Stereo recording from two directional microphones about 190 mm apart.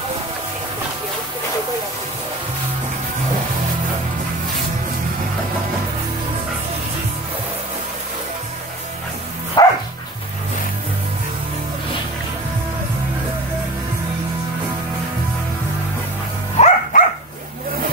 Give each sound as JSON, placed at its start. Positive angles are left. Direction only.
{"t": 9.6, "sound": "dog", "side_deg": 20}
{"t": 16.5, "sound": "dog", "side_deg": 35}